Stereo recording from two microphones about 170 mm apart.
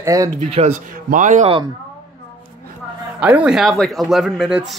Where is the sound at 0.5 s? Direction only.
40° right (ahead or behind).